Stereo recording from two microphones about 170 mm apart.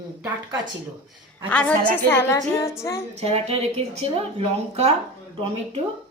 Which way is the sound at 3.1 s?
40° right (ahead or behind).